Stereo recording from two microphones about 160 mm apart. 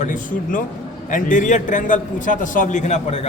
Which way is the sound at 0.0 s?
55° left (ahead or behind).